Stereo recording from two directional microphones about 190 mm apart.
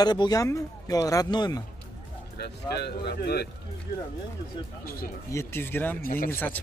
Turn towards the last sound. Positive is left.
turn(degrees=10)  # may be behind; listen again after turning